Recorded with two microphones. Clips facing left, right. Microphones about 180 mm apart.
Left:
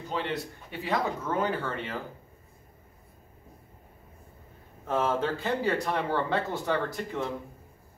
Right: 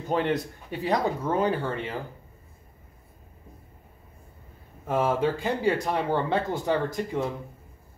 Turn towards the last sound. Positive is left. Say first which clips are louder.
# right 3 dB
turn(degrees=-15)  # may be behind; listen again after turning